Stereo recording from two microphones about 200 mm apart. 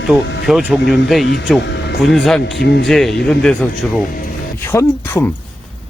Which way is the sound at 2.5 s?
60° left (ahead or behind).